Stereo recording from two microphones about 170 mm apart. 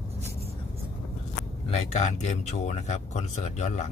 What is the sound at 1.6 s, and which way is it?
Speech, 40° left (ahead or behind).